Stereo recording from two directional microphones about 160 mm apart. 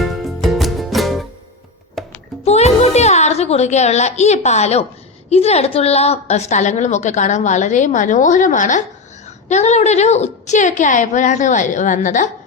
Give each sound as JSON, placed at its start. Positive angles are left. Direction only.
{"t": 0.0, "sound": "music", "side_deg": 0}
{"t": 2.4, "sound": "music", "side_deg": 40}
{"t": 5.3, "sound": "a woman's voice", "side_deg": 40}